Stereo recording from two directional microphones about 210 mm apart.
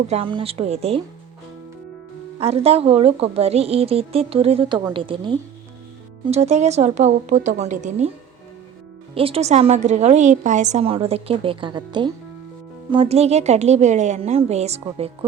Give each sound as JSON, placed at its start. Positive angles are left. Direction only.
{"t": 0.1, "sound": "a woman's voice", "side_deg": -25}
{"t": 2.4, "sound": "a woman's voice", "side_deg": -30}
{"t": 9.1, "sound": "a woman's voice", "side_deg": -25}